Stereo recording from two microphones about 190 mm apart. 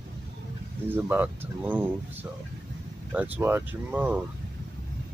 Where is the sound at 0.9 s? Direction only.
10° right (ahead or behind).